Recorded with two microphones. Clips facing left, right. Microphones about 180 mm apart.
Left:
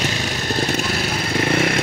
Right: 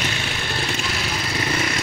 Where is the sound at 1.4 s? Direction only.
55° left (ahead or behind).